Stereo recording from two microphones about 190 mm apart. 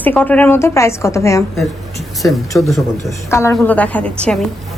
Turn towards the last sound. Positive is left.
turn(degrees=5)  # may be behind; listen again after turning